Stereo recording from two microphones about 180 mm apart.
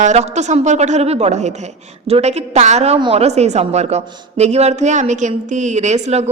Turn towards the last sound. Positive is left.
turn(degrees=-35)  # may be behind; listen again after turning